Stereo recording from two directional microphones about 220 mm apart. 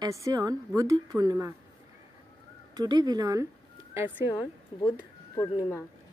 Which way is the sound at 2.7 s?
20° right (ahead or behind).